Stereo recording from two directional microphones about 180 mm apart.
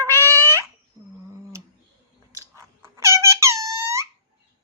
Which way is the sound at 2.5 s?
15° right (ahead or behind).